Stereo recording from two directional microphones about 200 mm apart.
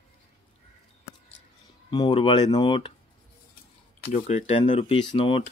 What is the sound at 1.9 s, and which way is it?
Speech, 20° left (ahead or behind).